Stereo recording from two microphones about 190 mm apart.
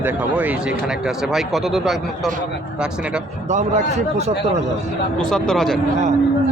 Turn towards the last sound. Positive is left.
turn(degrees=5)  # may be behind; listen again after turning